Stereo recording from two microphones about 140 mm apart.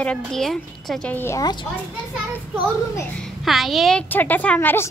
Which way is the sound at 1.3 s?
30° left (ahead or behind).